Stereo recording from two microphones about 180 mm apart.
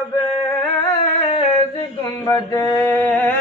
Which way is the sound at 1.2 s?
25° left (ahead or behind).